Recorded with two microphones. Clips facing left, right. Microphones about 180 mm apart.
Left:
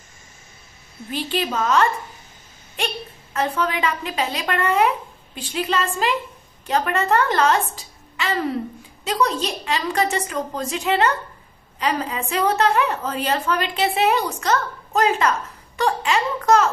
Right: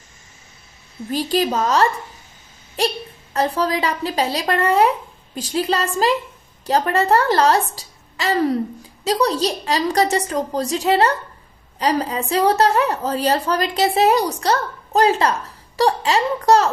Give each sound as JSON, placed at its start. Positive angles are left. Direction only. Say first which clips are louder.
{"t": 1.1, "sound": "a woman's voice", "louder": "right 5 dB", "side_deg": -40}